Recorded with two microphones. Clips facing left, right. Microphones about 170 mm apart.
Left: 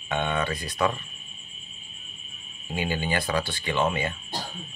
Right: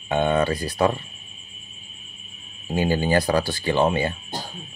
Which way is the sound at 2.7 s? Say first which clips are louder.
Right 7 dB; 40° right (ahead or behind).